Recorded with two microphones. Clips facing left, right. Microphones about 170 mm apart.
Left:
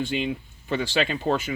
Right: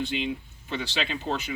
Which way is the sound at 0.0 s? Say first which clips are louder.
Left 3 dB; 50° left (ahead or behind).